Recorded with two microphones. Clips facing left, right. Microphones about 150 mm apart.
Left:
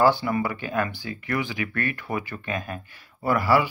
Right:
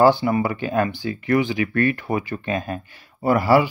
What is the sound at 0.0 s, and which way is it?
Speech, 25° right (ahead or behind).